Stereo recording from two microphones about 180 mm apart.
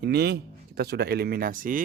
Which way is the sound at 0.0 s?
65° right (ahead or behind).